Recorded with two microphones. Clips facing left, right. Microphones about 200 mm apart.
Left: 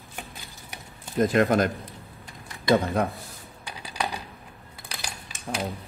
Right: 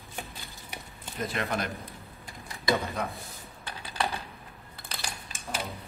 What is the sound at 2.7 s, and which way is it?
Speech, 55° left (ahead or behind).